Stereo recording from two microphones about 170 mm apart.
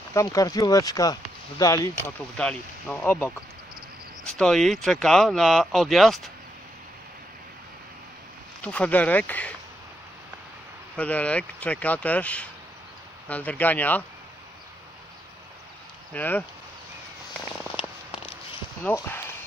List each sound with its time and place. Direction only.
0.1 s speech: 20° left (ahead or behind); by 6.3 s centre (ahead or behind)
8.6 s speech: 10° left (ahead or behind)
11.0 s speech: 10° left (ahead or behind)
16.1 s speech: 10° left (ahead or behind)
18.1 s a sound: 35° left (ahead or behind)
18.9 s speech: 15° left (ahead or behind)